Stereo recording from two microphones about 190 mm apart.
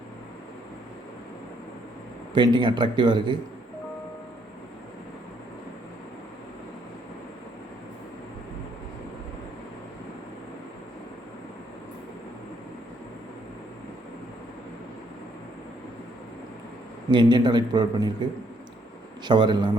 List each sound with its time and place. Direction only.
2.3 s a man's voice: 25° right (ahead or behind)
17.1 s a man's voice: 25° right (ahead or behind)